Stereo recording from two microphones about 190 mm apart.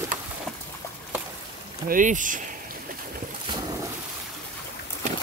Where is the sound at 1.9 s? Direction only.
45° right (ahead or behind).